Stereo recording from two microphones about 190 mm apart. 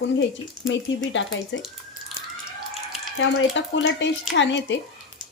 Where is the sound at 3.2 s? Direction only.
70° left (ahead or behind).